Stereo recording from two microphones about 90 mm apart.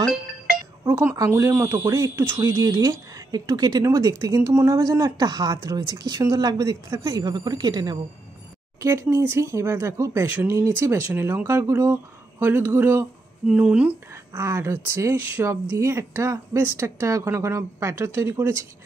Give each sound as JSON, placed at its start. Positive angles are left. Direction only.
{"t": 0.8, "sound": "speech", "side_deg": -25}
{"t": 8.7, "sound": "speech", "side_deg": -30}
{"t": 10.8, "sound": "speech", "side_deg": -25}
{"t": 13.5, "sound": "speech", "side_deg": -15}
{"t": 14.3, "sound": "speech", "side_deg": -30}